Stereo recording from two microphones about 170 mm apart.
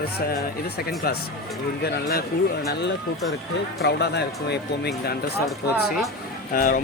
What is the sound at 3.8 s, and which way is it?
Speech, 75° left (ahead or behind).